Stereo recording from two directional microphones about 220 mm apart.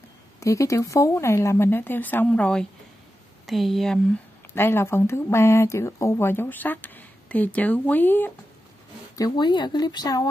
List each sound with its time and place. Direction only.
0.4 s speech: 15° left (ahead or behind)